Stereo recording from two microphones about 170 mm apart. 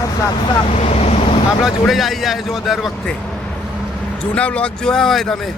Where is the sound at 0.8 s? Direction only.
40° left (ahead or behind).